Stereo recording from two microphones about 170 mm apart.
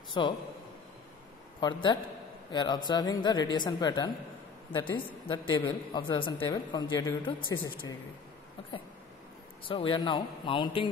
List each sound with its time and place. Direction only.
0.2 s a woman's voice: 25° left (ahead or behind)
1.6 s a woman's voice: 25° left (ahead or behind)
9.7 s a woman's voice: 30° left (ahead or behind)